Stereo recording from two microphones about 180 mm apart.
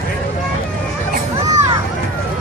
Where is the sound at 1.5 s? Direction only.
20° right (ahead or behind).